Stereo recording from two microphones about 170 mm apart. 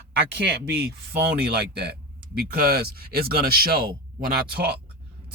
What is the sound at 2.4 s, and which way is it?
Speech, 60° right (ahead or behind).